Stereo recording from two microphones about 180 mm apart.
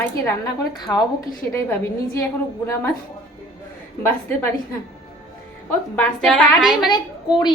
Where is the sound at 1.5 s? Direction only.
15° left (ahead or behind).